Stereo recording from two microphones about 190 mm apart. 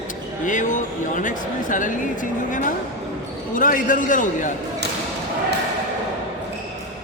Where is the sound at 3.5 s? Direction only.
45° left (ahead or behind).